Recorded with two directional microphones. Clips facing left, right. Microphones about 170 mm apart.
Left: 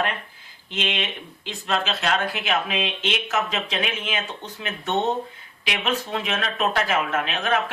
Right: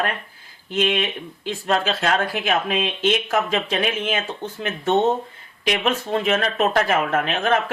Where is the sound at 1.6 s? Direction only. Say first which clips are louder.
Right 3 dB; 45° right (ahead or behind).